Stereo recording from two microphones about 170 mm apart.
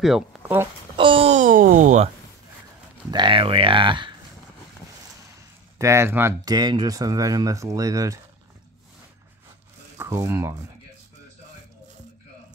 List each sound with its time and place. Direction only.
0.0 s speech: centre (ahead or behind)
0.9 s a sound: 30° right (ahead or behind); by 2.0 s 45° right (ahead or behind)
3.1 s speech: 30° right (ahead or behind)
5.8 s speech: 15° right (ahead or behind)
9.9 s speech: 20° right (ahead or behind)